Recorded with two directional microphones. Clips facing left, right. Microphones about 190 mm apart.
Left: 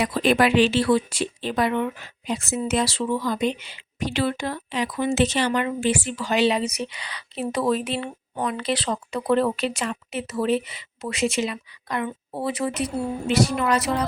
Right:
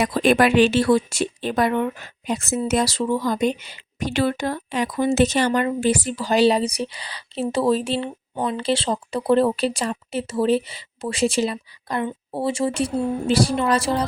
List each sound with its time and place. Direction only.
0.0 s speech: 45° right (ahead or behind); by 14.1 s 30° right (ahead or behind)